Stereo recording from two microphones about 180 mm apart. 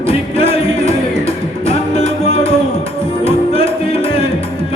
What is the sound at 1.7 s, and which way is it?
Music, 35° left (ahead or behind).